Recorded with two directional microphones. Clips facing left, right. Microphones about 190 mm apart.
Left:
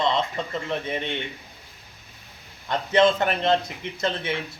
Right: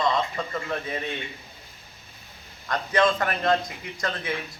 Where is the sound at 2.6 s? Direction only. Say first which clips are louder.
Left 3 dB; 25° left (ahead or behind).